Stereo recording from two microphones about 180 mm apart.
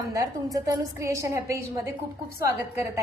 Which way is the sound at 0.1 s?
20° right (ahead or behind).